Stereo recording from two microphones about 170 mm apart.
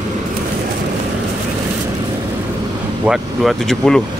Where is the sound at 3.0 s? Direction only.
Centre (ahead or behind).